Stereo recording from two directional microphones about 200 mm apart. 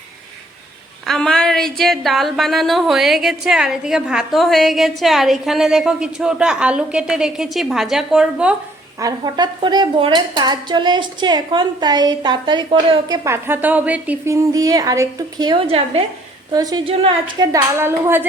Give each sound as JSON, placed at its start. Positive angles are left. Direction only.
{"t": 1.0, "sound": "a sound", "side_deg": 0}
{"t": 9.0, "sound": "speech", "side_deg": -20}
{"t": 16.5, "sound": "speech", "side_deg": -20}
{"t": 17.5, "sound": "a woman's voice", "side_deg": -10}